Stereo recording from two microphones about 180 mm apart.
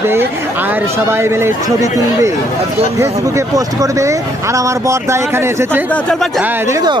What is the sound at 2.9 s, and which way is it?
Speech, 15° right (ahead or behind).